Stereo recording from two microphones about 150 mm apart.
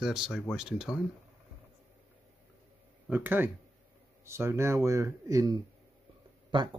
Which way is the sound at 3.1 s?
15° right (ahead or behind).